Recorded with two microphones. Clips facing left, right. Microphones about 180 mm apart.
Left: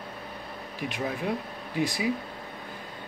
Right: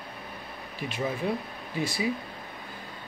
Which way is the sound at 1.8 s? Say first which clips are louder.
Left 2 dB; 15° left (ahead or behind).